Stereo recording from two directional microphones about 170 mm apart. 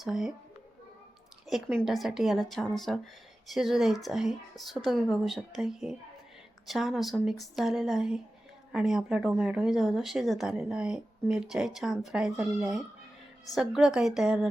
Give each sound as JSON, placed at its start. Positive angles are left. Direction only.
{"t": 0.0, "sound": "speech", "side_deg": 0}
{"t": 1.5, "sound": "speech", "side_deg": 0}